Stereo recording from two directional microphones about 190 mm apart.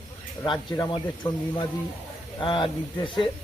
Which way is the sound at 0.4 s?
25° left (ahead or behind).